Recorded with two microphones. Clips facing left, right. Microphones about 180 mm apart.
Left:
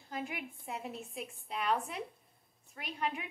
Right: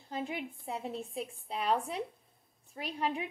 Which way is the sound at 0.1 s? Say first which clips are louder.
Right 3 dB; 30° right (ahead or behind).